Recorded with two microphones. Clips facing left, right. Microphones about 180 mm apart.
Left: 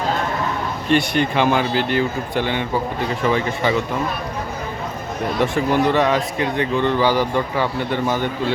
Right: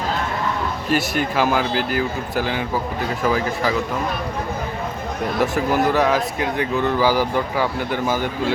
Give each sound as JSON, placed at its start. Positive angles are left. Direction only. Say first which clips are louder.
{"t": 0.9, "sound": "speech", "louder": "left 4 dB", "side_deg": -5}
{"t": 5.4, "sound": "speech", "louder": "left 1 dB", "side_deg": -5}